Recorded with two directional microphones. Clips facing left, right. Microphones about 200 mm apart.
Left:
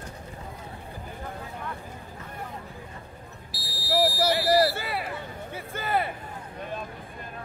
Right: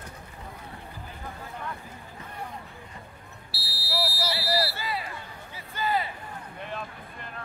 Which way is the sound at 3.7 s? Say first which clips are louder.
Left 7 dB; 45° left (ahead or behind).